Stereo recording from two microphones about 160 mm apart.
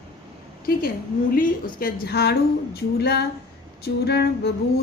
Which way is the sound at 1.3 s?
60° left (ahead or behind).